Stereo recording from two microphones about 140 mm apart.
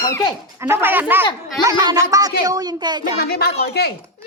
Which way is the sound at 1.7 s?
25° right (ahead or behind).